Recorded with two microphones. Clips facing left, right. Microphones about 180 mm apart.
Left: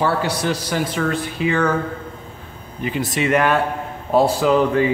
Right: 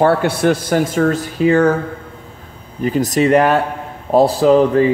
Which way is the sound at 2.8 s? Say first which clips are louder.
Right 7 dB; 40° right (ahead or behind).